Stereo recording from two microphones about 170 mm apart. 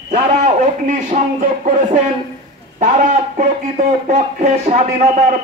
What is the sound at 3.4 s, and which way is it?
Speech, 45° right (ahead or behind).